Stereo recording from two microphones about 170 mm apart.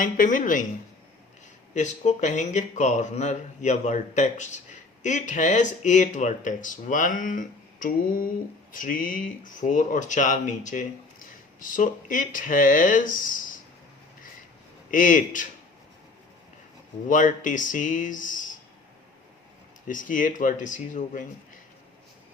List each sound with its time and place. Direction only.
0.0 s speech: 50° left (ahead or behind)
1.7 s speech: 45° left (ahead or behind)
14.8 s speech: 50° left (ahead or behind)
17.1 s speech: 50° left (ahead or behind)
19.9 s speech: 50° left (ahead or behind)